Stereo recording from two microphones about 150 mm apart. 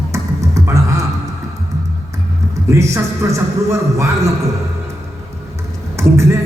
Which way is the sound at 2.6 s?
20° right (ahead or behind).